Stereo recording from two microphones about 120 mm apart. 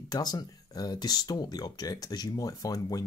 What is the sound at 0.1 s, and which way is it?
Speech, 35° left (ahead or behind).